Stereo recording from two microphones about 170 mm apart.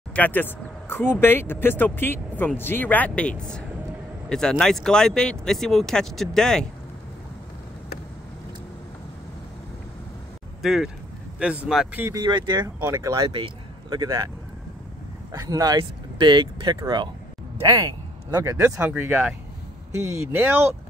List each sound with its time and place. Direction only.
0.1 s speech: 10° left (ahead or behind)
10.6 s speech: centre (ahead or behind)
12.2 s speech: 25° right (ahead or behind)
13.3 s a sound: 30° right (ahead or behind)
15.3 s speech: 20° right (ahead or behind)